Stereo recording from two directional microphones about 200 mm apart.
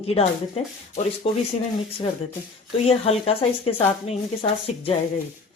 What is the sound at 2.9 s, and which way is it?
A woman's voice, 30° left (ahead or behind).